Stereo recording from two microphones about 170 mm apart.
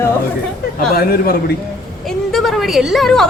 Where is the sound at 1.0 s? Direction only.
60° left (ahead or behind).